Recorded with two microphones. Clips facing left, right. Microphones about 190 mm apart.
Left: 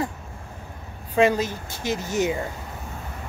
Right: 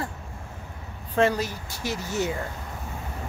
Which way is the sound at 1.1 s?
20° left (ahead or behind).